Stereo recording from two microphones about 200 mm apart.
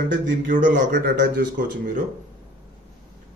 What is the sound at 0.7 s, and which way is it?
Speech, 45° right (ahead or behind).